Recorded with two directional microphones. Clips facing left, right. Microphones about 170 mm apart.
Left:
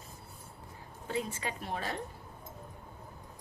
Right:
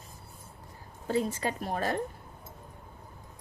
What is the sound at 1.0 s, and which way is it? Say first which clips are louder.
Speech: right 6 dB; 40° right (ahead or behind).